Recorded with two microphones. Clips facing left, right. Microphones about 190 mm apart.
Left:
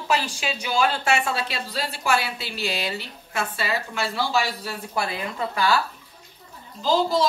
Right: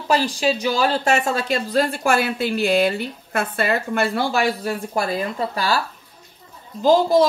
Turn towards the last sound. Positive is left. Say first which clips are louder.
# right 7 dB
turn(degrees=-50)  # may be behind; listen again after turning